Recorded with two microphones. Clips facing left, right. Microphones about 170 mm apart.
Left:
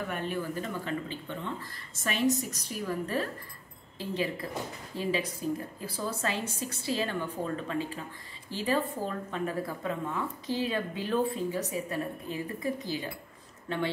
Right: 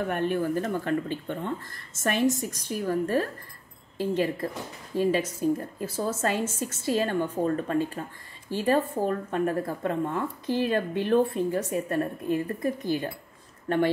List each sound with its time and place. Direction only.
0.1 s speech: 55° right (ahead or behind)